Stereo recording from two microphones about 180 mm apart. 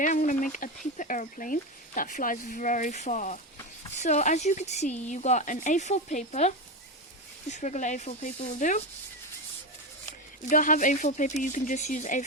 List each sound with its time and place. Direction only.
0.0 s speech: 45° left (ahead or behind)
10.5 s speech: 45° left (ahead or behind)